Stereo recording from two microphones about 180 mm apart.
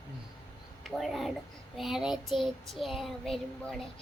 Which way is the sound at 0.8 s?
Centre (ahead or behind).